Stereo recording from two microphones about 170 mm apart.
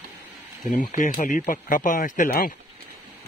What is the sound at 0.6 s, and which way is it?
Speech, 50° left (ahead or behind).